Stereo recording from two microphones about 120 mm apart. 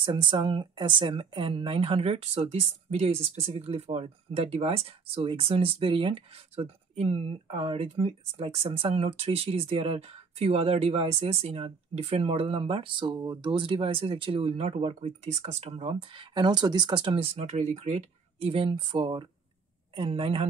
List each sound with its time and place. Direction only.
0.0 s speech: 45° right (ahead or behind); by 18.5 s 75° right (ahead or behind)
18.5 s speech: 50° right (ahead or behind)